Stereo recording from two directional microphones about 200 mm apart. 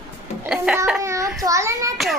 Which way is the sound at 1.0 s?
15° right (ahead or behind).